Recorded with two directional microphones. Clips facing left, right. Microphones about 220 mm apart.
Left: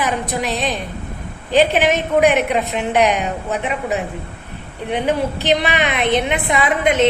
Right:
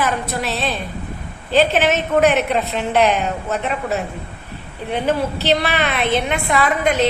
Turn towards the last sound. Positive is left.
turn(degrees=20)  # may be behind; listen again after turning